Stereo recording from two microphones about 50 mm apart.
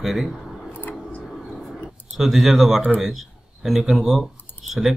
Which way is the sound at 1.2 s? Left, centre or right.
Centre.